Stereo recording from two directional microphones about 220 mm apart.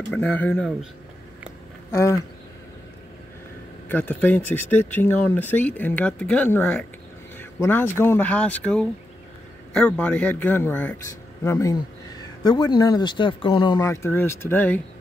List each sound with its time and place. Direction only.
0.1 s speech: 5° left (ahead or behind)
1.9 s speech: 10° left (ahead or behind)
3.9 s speech: 5° left (ahead or behind)